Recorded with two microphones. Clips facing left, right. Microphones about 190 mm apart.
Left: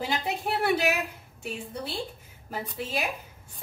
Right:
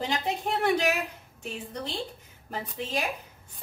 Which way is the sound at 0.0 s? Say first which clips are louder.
Even; 5° left (ahead or behind).